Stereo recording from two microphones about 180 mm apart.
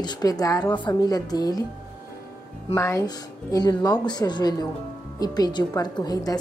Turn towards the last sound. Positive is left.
turn(degrees=20)  # may be behind; listen again after turning